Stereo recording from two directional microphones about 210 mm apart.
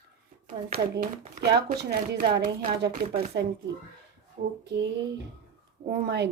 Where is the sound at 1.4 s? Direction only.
50° right (ahead or behind).